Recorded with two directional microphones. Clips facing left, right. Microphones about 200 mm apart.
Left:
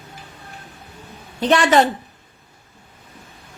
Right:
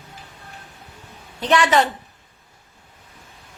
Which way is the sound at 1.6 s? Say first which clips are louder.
Left 2 dB; 45° left (ahead or behind).